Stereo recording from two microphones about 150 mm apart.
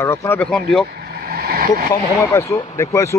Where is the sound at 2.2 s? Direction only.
20° left (ahead or behind).